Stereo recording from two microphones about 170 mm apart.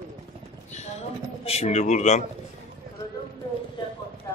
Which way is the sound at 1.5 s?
40° left (ahead or behind).